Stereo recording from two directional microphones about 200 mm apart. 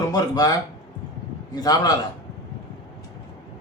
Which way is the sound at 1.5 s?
20° left (ahead or behind).